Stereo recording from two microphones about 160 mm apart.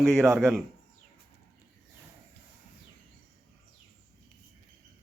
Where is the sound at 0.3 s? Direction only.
Centre (ahead or behind).